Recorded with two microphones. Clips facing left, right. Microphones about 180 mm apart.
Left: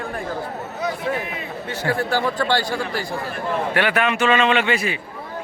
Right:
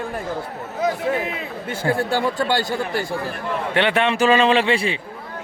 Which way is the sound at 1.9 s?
25° right (ahead or behind).